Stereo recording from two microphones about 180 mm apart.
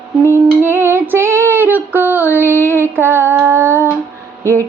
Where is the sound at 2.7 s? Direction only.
15° right (ahead or behind).